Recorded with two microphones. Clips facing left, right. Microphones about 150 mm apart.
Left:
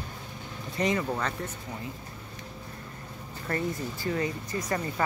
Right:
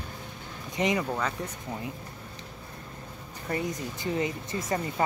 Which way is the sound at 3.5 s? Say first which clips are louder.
Even; 20° right (ahead or behind).